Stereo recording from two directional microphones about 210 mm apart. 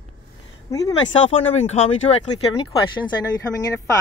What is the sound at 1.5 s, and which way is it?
Speech, 30° left (ahead or behind).